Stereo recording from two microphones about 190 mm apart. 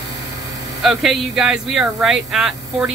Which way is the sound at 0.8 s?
Centre (ahead or behind).